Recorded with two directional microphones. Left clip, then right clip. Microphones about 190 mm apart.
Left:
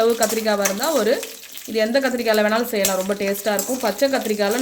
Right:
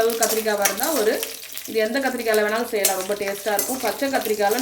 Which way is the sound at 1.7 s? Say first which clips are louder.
Left 3 dB; 55° left (ahead or behind).